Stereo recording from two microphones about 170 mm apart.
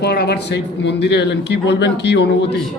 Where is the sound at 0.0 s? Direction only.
70° left (ahead or behind).